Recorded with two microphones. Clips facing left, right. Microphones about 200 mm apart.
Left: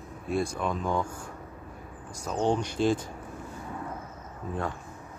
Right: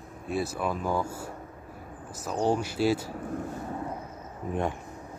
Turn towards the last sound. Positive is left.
turn(degrees=-20)  # may be behind; listen again after turning